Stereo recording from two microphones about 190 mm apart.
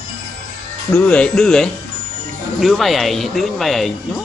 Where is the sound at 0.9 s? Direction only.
5° left (ahead or behind).